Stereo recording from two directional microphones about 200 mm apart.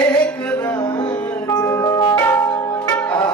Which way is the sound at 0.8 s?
20° left (ahead or behind).